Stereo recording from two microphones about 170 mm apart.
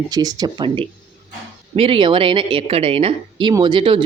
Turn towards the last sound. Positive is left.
turn(degrees=-30)  # may be behind; listen again after turning